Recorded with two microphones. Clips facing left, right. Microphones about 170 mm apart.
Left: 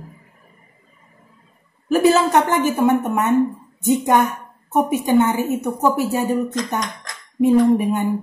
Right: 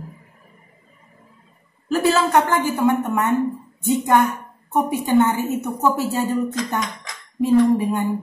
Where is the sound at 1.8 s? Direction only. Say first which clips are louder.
Left 4 dB; 20° left (ahead or behind).